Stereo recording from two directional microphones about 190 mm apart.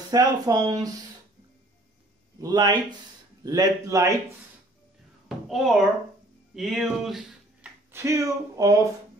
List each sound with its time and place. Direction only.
0.1 s speech: 20° right (ahead or behind)
2.4 s speech: 20° right (ahead or behind)
5.5 s music: centre (ahead or behind)
7.9 s speech: 15° right (ahead or behind)